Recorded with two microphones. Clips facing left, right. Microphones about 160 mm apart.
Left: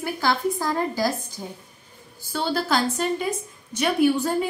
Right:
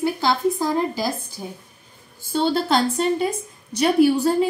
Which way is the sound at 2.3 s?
25° right (ahead or behind).